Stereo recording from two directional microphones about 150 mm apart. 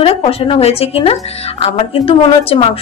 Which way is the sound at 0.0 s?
40° left (ahead or behind).